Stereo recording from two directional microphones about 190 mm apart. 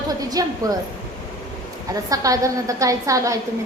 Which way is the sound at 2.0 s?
20° right (ahead or behind).